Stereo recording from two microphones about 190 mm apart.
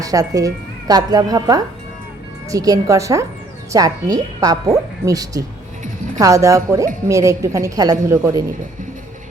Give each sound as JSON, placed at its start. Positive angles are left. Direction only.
{"t": 0.0, "sound": "a woman's voice", "side_deg": -20}